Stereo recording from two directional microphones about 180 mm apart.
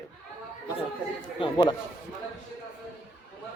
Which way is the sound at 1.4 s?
25° left (ahead or behind).